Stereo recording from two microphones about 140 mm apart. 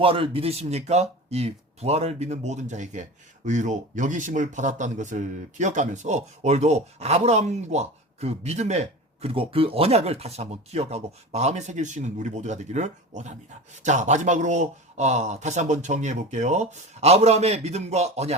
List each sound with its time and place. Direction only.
0.0 s speech: 40° right (ahead or behind)